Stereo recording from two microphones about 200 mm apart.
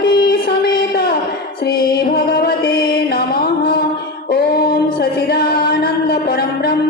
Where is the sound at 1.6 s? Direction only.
50° left (ahead or behind).